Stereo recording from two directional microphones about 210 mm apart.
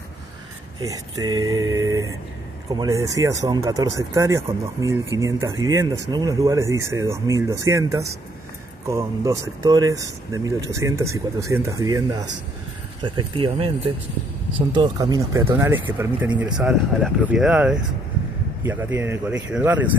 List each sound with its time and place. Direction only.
0.8 s speech: 15° right (ahead or behind)
14.7 s speech: 20° right (ahead or behind)
16.5 s speech: 5° right (ahead or behind)